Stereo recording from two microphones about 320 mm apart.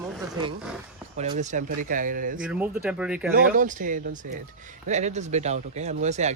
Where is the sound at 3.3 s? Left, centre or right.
Right.